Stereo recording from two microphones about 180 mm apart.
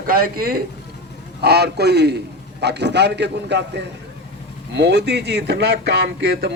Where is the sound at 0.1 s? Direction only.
55° right (ahead or behind).